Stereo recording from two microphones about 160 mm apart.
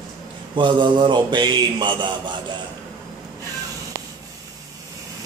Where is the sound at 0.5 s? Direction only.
30° right (ahead or behind).